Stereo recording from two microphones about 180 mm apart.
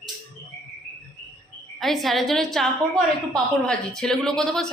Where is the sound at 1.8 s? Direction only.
Centre (ahead or behind).